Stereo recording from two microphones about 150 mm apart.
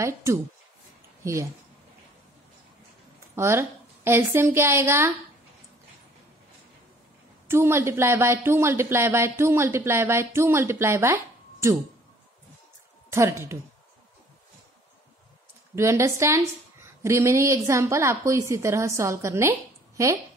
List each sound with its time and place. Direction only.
0.0 s a woman's voice: 20° right (ahead or behind)
3.3 s speech: 15° right (ahead or behind)
7.4 s speech: 15° right (ahead or behind)
13.1 s a woman's voice: 20° right (ahead or behind)
15.7 s a woman's voice: 20° right (ahead or behind)